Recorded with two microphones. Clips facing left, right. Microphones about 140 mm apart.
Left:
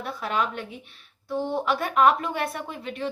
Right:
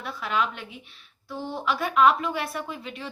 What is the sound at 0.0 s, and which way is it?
A woman's voice, 40° left (ahead or behind).